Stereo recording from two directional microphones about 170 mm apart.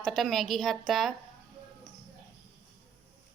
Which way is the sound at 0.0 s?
Centre (ahead or behind).